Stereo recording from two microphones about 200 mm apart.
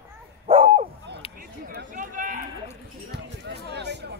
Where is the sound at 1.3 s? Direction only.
45° right (ahead or behind).